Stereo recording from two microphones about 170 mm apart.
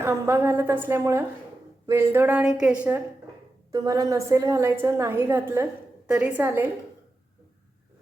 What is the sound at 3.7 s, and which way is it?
A woman's voice, 20° right (ahead or behind).